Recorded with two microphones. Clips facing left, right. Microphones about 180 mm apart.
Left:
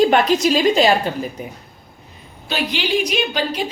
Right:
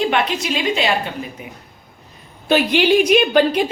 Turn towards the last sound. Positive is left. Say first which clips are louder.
# right 7 dB
turn(degrees=-55)  # may be behind; listen again after turning